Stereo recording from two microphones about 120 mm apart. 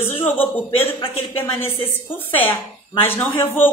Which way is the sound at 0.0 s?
20° left (ahead or behind).